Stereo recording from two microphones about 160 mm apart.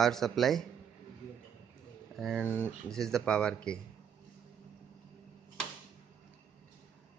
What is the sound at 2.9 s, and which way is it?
Speech, 5° left (ahead or behind).